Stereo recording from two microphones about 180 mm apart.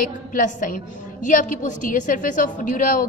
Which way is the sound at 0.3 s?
50° left (ahead or behind).